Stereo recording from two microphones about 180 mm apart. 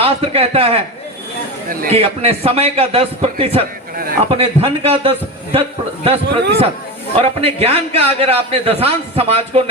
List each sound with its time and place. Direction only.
0.0 s a man's voice: 30° right (ahead or behind)
1.9 s a man's voice: 35° right (ahead or behind)
6.2 s a man's voice: 65° right (ahead or behind)
7.2 s a man's voice: 35° right (ahead or behind)